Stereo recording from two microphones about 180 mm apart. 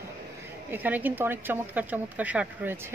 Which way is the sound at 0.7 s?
10° right (ahead or behind).